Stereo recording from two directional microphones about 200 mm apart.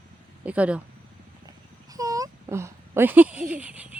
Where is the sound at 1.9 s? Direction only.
15° right (ahead or behind).